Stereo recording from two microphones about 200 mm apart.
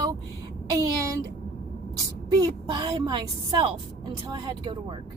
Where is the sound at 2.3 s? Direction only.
20° right (ahead or behind).